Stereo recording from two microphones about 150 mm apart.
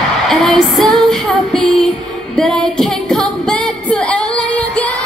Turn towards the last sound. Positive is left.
turn(degrees=10)  # may be behind; listen again after turning